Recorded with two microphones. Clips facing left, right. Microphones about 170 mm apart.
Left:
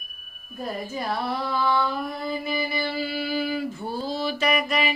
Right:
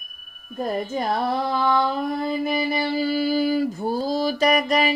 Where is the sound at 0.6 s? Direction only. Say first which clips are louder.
Right 6 dB; 45° right (ahead or behind).